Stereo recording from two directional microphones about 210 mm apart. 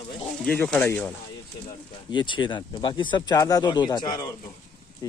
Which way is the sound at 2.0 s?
20° left (ahead or behind).